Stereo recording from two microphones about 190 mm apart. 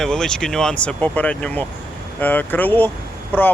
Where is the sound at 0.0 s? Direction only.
5° left (ahead or behind).